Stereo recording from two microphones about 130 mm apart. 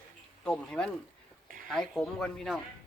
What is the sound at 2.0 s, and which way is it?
Speech, 5° left (ahead or behind).